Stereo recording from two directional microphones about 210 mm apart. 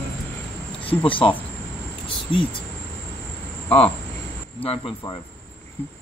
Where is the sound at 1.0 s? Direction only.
25° left (ahead or behind).